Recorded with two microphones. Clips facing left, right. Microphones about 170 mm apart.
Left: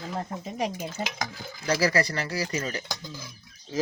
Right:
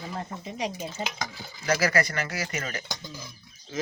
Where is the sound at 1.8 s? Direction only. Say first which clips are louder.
Left 3 dB; 30° left (ahead or behind).